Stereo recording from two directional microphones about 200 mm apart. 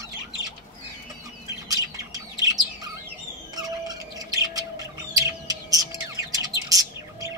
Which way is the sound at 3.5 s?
20° right (ahead or behind).